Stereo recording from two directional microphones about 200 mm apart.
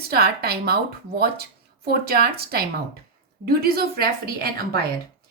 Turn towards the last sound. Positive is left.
turn(degrees=-50)  # may be behind; listen again after turning